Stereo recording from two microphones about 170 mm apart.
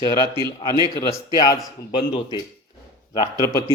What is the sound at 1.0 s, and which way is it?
Speech, 20° left (ahead or behind).